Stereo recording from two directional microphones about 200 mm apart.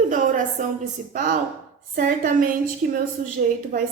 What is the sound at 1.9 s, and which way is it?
A woman's voice, 45° right (ahead or behind).